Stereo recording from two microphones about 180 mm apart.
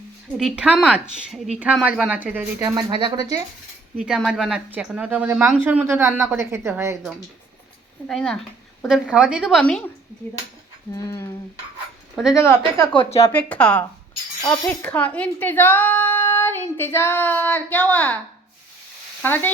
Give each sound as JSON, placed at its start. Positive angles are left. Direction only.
{"t": 0.3, "sound": "a woman's voice", "side_deg": -5}
{"t": 2.6, "sound": "speech", "side_deg": -25}
{"t": 3.9, "sound": "a woman's voice", "side_deg": -5}
{"t": 8.0, "sound": "a woman's voice", "side_deg": 5}
{"t": 10.9, "sound": "speech", "side_deg": 15}
{"t": 12.1, "sound": "speech", "side_deg": 0}
{"t": 12.4, "sound": "speech", "side_deg": 15}
{"t": 19.2, "sound": "speech", "side_deg": 10}